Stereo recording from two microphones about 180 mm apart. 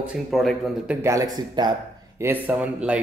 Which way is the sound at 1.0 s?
20° right (ahead or behind).